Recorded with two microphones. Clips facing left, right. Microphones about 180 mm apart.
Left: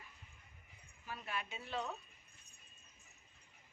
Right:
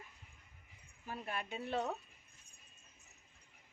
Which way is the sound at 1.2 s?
50° right (ahead or behind).